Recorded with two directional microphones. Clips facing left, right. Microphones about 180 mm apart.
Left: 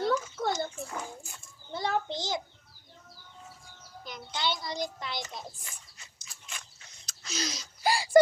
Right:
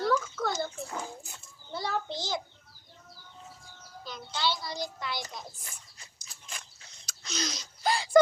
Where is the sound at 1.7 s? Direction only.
20° left (ahead or behind).